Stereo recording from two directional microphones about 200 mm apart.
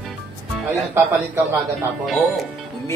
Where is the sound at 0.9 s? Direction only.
15° right (ahead or behind).